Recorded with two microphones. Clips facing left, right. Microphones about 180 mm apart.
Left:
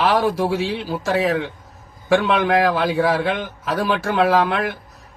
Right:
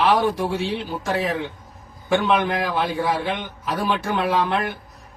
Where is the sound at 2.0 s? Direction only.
90° left.